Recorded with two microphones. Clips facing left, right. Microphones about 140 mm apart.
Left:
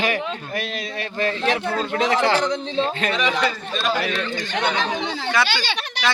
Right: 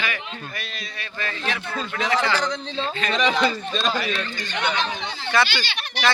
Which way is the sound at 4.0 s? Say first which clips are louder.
Left 3 dB; 65° left (ahead or behind).